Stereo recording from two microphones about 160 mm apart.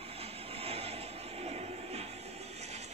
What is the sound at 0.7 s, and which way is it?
Vehicle, 40° right (ahead or behind).